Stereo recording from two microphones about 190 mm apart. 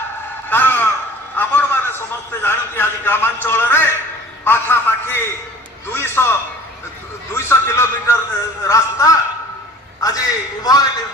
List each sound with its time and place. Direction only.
0.5 s a man's voice: 10° left (ahead or behind)
7.3 s a man's voice: 15° left (ahead or behind)